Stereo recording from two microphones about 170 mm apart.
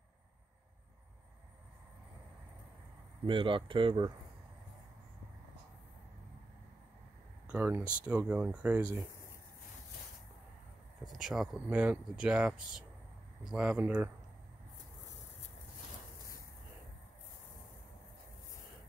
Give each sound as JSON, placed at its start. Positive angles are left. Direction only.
{"t": 3.3, "sound": "speech", "side_deg": -30}
{"t": 7.4, "sound": "speech", "side_deg": -10}
{"t": 11.1, "sound": "speech", "side_deg": 0}